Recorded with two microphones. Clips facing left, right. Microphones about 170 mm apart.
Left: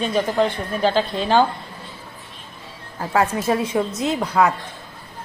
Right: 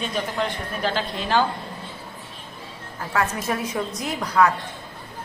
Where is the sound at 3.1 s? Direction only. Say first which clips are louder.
Left 5 dB; 30° left (ahead or behind).